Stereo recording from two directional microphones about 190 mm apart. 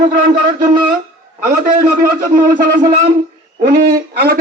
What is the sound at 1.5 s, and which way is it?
A man's voice, 45° right (ahead or behind).